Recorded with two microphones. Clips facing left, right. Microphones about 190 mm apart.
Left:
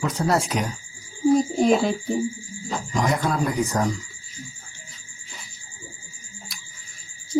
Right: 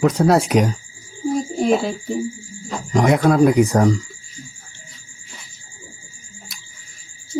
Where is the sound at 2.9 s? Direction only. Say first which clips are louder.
Right 9 dB; 65° right (ahead or behind).